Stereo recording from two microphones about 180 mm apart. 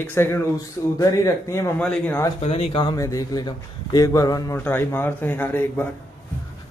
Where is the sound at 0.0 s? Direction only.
10° left (ahead or behind).